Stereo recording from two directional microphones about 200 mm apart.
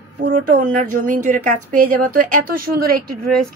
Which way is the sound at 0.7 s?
40° right (ahead or behind).